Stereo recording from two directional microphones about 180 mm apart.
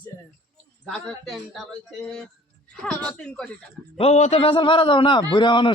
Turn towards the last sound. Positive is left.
turn(degrees=25)  # may be behind; listen again after turning